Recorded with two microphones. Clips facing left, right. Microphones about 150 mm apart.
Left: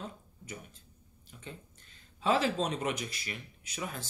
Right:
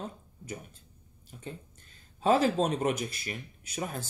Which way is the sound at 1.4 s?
45° right (ahead or behind).